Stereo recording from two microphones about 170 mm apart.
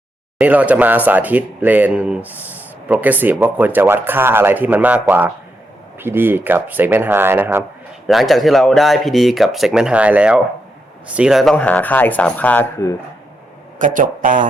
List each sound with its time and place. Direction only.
0.3 s speech: 10° right (ahead or behind)
8.0 s speech: centre (ahead or behind)
11.5 s speech: 10° left (ahead or behind)
13.7 s speech: 50° right (ahead or behind)